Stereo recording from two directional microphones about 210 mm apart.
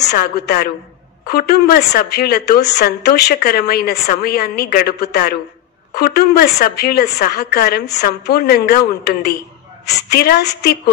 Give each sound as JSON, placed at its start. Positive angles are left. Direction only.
{"t": 0.0, "sound": "a woman's voice", "side_deg": 55}